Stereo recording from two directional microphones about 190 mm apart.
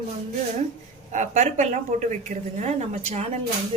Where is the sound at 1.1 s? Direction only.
40° right (ahead or behind).